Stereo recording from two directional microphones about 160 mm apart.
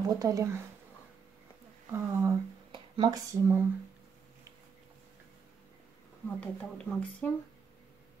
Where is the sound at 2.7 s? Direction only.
25° right (ahead or behind).